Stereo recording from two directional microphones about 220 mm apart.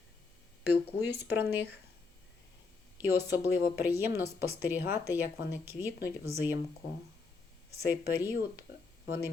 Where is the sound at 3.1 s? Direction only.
10° right (ahead or behind).